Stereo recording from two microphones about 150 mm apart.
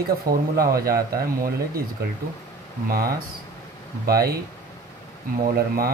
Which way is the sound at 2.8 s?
90° right.